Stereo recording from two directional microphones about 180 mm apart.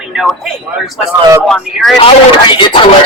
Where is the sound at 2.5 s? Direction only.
25° left (ahead or behind).